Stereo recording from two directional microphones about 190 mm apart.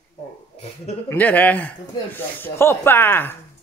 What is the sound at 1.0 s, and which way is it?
Speech, 10° left (ahead or behind).